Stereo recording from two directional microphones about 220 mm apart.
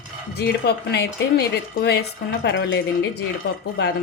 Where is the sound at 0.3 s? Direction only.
45° left (ahead or behind).